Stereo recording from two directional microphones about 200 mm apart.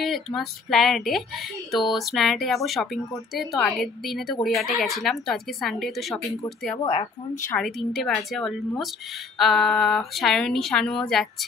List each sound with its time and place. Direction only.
0.0 s speech: centre (ahead or behind)
6.8 s speech: 30° left (ahead or behind)
7.4 s speech: 5° left (ahead or behind)